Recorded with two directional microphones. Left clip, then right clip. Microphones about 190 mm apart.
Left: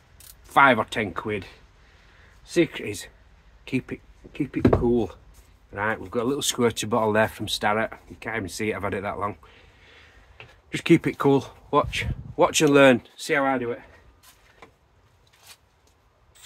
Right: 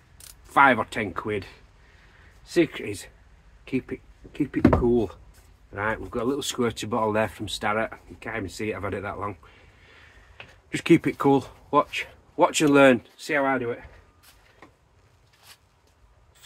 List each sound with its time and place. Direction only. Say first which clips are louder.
0.5 s speech: left 1 dB; 25° left (ahead or behind)
2.5 s speech: even; 20° left (ahead or behind)
5.7 s speech: left 1 dB; 30° left (ahead or behind)
10.7 s speech: even; 15° left (ahead or behind)
13.2 s speech: left 1 dB; 40° left (ahead or behind)